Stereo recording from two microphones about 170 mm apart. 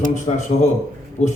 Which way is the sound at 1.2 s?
45° left (ahead or behind).